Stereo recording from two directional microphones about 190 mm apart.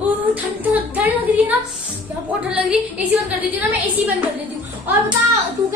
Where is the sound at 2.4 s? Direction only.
5° right (ahead or behind).